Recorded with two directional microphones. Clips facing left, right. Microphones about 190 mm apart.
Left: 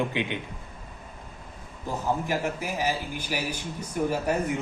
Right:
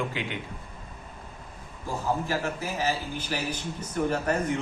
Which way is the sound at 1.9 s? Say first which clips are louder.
Left 1 dB; 20° left (ahead or behind).